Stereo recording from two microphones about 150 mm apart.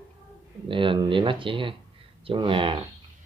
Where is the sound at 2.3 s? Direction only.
35° right (ahead or behind).